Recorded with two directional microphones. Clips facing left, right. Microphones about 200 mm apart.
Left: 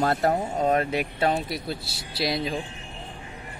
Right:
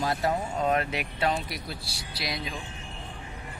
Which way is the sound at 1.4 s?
25° left (ahead or behind).